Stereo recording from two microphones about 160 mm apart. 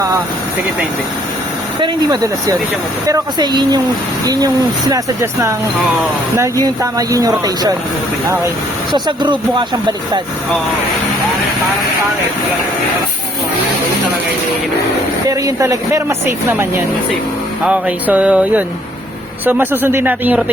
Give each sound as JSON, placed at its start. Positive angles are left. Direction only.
{"t": 1.8, "sound": "speech", "side_deg": -20}
{"t": 8.9, "sound": "speech", "side_deg": -30}
{"t": 15.3, "sound": "speech", "side_deg": -20}